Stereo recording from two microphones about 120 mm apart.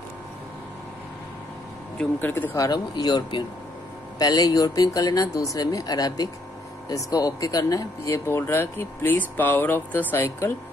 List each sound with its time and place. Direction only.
2.0 s speech: 15° left (ahead or behind)
2.5 s speech: 30° left (ahead or behind)